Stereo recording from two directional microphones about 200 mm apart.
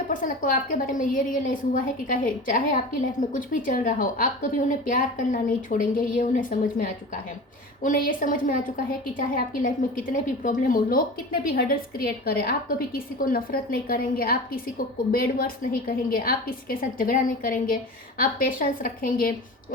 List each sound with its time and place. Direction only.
0.1 s a woman's voice: 40° left (ahead or behind)